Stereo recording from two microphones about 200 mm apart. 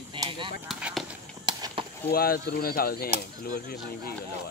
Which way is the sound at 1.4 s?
25° right (ahead or behind).